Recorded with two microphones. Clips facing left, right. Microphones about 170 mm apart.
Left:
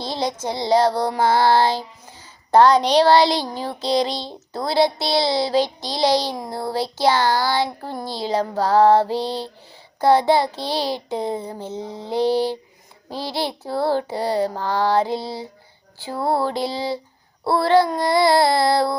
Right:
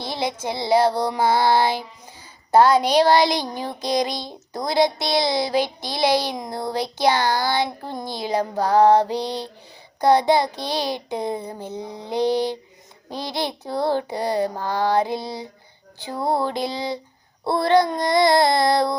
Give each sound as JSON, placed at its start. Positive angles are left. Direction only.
{"t": 0.1, "sound": "female singing", "side_deg": -15}
{"t": 17.4, "sound": "babbling", "side_deg": -20}
{"t": 17.9, "sound": "child singing", "side_deg": -20}